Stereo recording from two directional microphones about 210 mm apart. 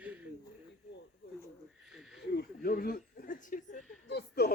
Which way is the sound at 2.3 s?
45° left (ahead or behind).